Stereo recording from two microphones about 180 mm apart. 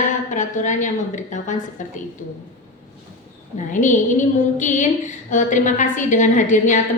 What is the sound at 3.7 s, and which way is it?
A woman's voice, 45° left (ahead or behind).